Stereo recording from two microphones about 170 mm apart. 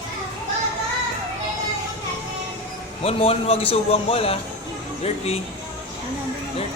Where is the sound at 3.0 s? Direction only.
35° left (ahead or behind).